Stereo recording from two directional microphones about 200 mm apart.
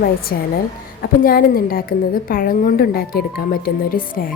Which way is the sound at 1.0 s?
45° left (ahead or behind).